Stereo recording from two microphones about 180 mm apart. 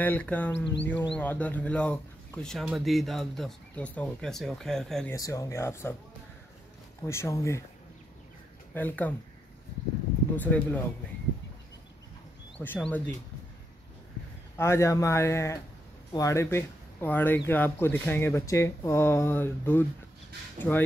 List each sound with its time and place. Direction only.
0.0 s speech: 10° left (ahead or behind)
5.1 s speech: 20° left (ahead or behind)
7.0 s speech: 15° left (ahead or behind)
8.7 s speech: 10° left (ahead or behind)
10.3 s speech: 10° left (ahead or behind)
12.5 s speech: 5° left (ahead or behind)
14.6 s speech: 15° left (ahead or behind)